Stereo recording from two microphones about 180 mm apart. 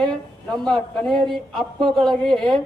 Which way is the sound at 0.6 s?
Centre (ahead or behind).